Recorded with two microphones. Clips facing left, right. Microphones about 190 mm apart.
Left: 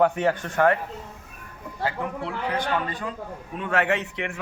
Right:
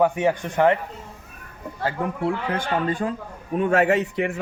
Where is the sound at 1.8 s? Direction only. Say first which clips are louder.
Right 4 dB; 45° right (ahead or behind).